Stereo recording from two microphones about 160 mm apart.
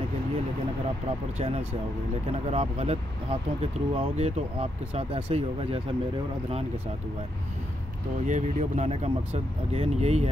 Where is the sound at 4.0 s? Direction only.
40° right (ahead or behind).